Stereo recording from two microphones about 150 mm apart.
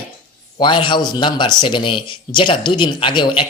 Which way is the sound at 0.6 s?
35° left (ahead or behind).